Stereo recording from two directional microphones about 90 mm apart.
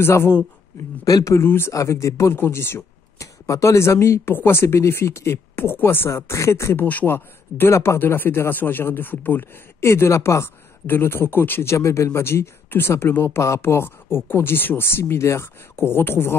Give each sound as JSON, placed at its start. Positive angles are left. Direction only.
{"t": 0.0, "sound": "speech", "side_deg": 30}
{"t": 1.0, "sound": "speech", "side_deg": 40}